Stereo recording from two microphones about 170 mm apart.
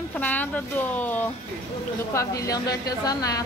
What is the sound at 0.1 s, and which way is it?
A woman's voice, 10° left (ahead or behind).